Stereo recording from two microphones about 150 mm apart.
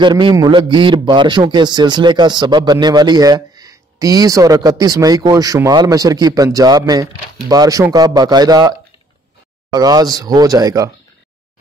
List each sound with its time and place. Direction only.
0.0 s a man's voice: 30° right (ahead or behind)